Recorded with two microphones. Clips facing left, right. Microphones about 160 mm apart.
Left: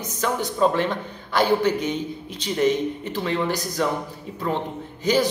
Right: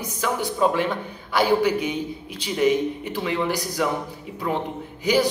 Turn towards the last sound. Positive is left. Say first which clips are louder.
# even
turn(degrees=-10)  # may be behind; listen again after turning